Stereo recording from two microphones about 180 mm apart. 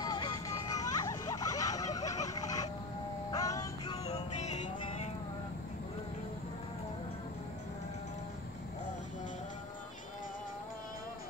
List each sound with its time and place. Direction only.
0.0 s music: 20° left (ahead or behind)
4.0 s music: 35° left (ahead or behind)